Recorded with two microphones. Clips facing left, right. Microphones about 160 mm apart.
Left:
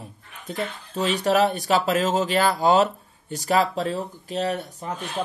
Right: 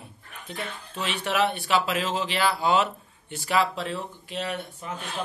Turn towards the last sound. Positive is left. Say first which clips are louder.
# left 5 dB
turn(degrees=40)  # may be behind; listen again after turning